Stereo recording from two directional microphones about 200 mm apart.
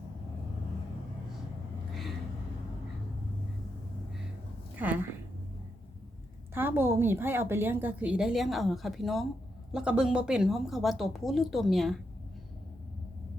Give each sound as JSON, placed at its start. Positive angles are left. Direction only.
{"t": 4.8, "sound": "a woman's voice", "side_deg": -10}
{"t": 6.5, "sound": "a woman's voice", "side_deg": -10}